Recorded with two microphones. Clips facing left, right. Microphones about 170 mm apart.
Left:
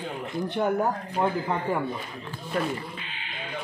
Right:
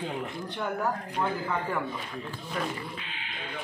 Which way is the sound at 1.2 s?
30° left (ahead or behind).